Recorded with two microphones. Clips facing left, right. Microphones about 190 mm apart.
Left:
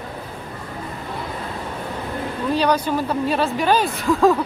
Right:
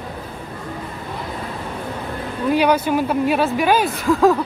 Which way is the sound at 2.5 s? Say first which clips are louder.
Right 3 dB; 10° right (ahead or behind).